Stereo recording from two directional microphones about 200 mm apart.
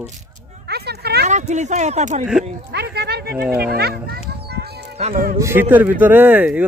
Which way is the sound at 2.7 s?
55° right (ahead or behind).